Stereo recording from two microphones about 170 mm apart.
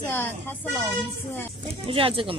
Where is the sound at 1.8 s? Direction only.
35° right (ahead or behind).